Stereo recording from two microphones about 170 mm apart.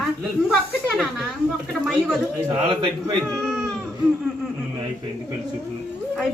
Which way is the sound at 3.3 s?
5° left (ahead or behind).